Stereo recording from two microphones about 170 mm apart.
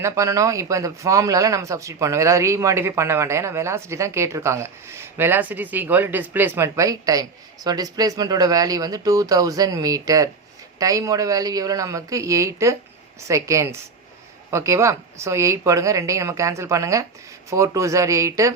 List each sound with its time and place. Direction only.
0.0 s speech: 20° right (ahead or behind)